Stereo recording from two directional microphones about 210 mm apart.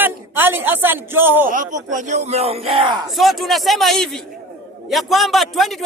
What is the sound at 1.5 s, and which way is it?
Speech, 40° right (ahead or behind).